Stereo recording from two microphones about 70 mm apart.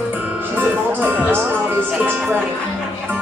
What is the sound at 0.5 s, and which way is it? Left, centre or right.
Speech, right.